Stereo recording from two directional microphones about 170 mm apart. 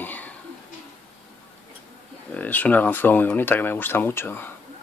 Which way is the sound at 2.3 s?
10° left (ahead or behind).